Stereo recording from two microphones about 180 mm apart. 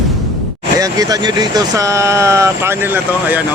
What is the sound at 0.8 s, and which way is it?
Speech, 20° right (ahead or behind).